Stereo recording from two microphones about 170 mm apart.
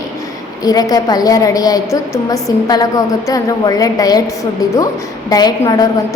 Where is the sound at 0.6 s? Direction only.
20° left (ahead or behind).